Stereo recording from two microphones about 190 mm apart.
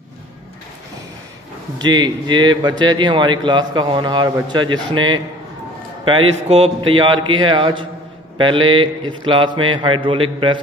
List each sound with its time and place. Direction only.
1.8 s a man's voice: 20° right (ahead or behind)
6.5 s a man's voice: 30° right (ahead or behind)